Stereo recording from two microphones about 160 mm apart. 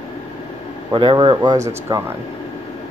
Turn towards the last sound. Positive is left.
turn(degrees=-20)  # may be behind; listen again after turning